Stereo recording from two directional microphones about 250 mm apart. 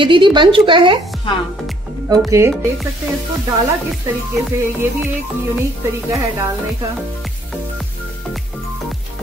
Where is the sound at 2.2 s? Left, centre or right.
Centre.